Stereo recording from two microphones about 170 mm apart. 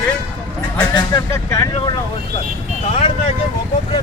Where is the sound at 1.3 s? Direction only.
20° left (ahead or behind).